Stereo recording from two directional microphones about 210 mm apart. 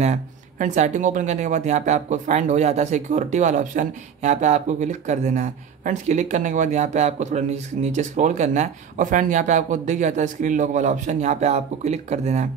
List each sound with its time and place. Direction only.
0.0 s speech: 35° right (ahead or behind)